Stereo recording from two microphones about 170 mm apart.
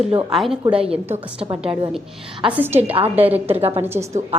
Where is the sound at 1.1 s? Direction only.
35° right (ahead or behind).